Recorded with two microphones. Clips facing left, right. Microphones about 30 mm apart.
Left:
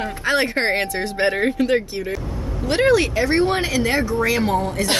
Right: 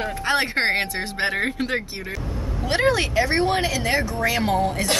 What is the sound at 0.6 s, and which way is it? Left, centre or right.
Speech, centre.